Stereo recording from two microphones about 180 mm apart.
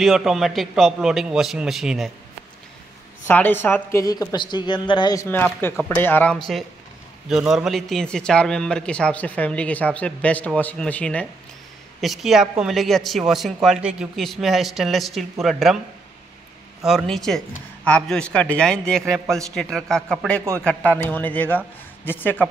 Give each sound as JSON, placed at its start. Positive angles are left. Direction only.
{"t": 0.0, "sound": "speech", "side_deg": 0}
{"t": 3.3, "sound": "a woman's voice", "side_deg": 10}
{"t": 16.8, "sound": "a woman's voice", "side_deg": 0}